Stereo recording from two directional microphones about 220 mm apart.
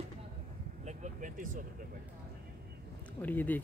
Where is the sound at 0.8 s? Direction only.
35° right (ahead or behind).